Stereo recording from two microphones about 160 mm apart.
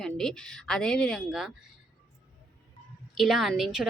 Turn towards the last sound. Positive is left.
turn(degrees=0)  # may be behind; listen again after turning